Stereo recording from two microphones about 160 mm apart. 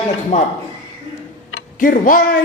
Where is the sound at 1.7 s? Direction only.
55° left (ahead or behind).